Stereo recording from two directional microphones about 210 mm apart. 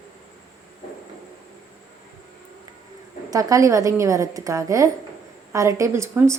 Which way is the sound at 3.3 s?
15° right (ahead or behind).